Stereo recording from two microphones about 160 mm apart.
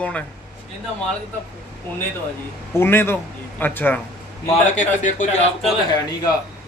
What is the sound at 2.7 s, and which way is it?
A man's voice, 15° left (ahead or behind).